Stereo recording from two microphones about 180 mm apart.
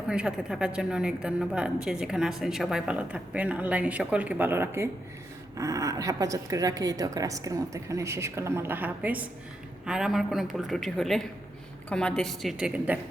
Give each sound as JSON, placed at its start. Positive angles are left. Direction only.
{"t": 0.1, "sound": "a woman's voice", "side_deg": -5}